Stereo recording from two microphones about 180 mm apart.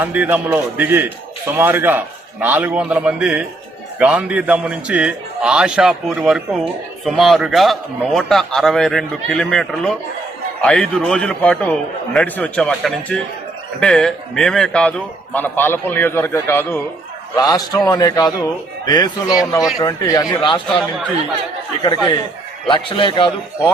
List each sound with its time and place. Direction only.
0.0 s a man's voice: 10° right (ahead or behind); by 20.6 s 25° left (ahead or behind)
21.8 s a man's voice: 25° left (ahead or behind)